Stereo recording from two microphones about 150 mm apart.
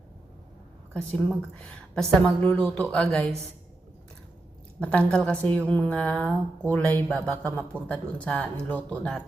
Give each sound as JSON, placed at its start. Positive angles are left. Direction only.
{"t": 0.9, "sound": "a woman's voice", "side_deg": 5}
{"t": 4.8, "sound": "speech", "side_deg": 10}